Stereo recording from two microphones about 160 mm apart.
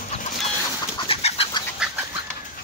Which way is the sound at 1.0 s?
35° left (ahead or behind).